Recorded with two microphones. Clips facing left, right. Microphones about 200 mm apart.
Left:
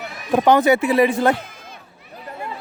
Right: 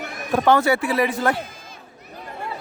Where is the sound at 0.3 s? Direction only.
20° left (ahead or behind).